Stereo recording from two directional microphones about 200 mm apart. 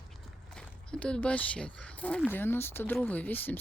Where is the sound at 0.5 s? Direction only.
5° left (ahead or behind).